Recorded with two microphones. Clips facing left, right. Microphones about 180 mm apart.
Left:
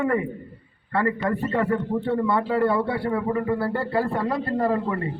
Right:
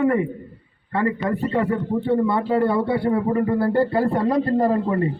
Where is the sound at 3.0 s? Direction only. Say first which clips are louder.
Right 4 dB; 35° right (ahead or behind).